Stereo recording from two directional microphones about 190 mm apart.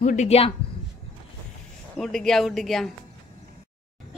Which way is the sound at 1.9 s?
Centre (ahead or behind).